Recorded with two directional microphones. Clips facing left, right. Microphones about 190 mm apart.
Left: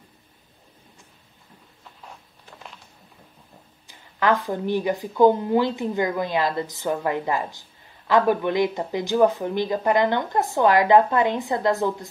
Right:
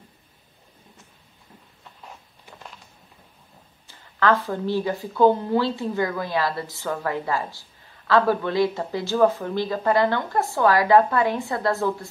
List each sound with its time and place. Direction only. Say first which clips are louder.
3.8 s speech: right 1 dB; 15° left (ahead or behind)